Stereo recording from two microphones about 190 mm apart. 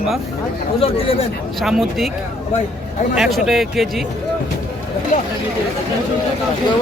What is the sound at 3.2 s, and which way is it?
Speech, centre (ahead or behind).